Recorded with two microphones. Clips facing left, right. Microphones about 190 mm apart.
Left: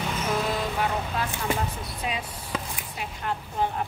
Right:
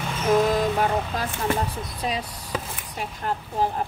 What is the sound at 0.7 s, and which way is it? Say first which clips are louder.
Vehicle: right 4 dB; 40° right (ahead or behind).